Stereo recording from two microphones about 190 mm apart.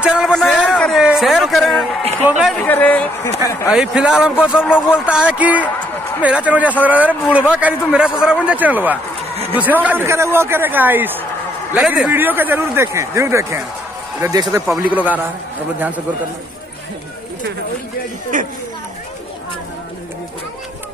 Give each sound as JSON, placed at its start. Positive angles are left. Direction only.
{"t": 0.0, "sound": "a man's voice", "side_deg": -5}
{"t": 0.6, "sound": "a sound", "side_deg": 0}
{"t": 2.2, "sound": "a man's voice", "side_deg": -5}
{"t": 2.6, "sound": "speech", "side_deg": 10}
{"t": 3.7, "sound": "a man's voice", "side_deg": -5}
{"t": 18.3, "sound": "speech", "side_deg": -45}